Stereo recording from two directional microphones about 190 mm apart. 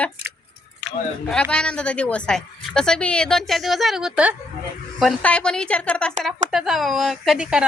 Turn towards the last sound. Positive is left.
turn(degrees=-5)  # may be behind; listen again after turning